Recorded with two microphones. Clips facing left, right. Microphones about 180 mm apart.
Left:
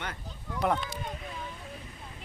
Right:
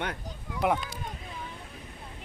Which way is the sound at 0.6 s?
5° right (ahead or behind).